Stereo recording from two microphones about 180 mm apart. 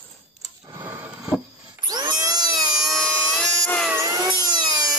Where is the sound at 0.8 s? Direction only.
10° right (ahead or behind).